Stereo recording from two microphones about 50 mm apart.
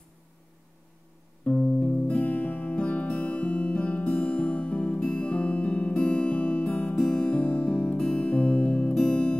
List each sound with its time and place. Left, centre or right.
1.4 s music: centre
7.0 s music: centre